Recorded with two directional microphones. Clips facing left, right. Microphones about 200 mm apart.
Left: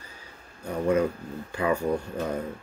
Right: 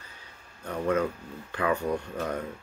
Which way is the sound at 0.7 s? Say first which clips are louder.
Left 3 dB; 10° left (ahead or behind).